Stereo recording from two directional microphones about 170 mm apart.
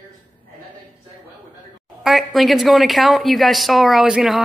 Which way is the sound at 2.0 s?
Centre (ahead or behind).